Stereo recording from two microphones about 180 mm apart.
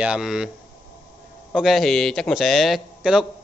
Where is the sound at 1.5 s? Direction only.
Centre (ahead or behind).